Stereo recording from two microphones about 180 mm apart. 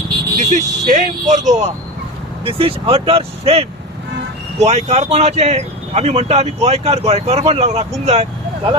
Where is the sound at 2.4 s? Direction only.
30° right (ahead or behind).